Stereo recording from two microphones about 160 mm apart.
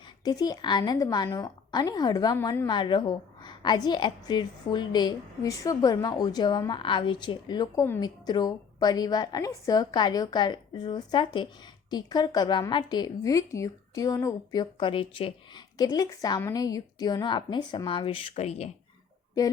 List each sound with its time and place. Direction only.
0.3 s a woman's voice: 25° left (ahead or behind); by 18.7 s 45° left (ahead or behind)